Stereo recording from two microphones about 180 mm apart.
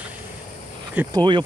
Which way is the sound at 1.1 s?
25° right (ahead or behind).